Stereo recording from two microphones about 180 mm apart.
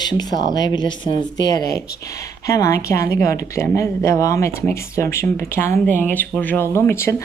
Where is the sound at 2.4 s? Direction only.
15° left (ahead or behind).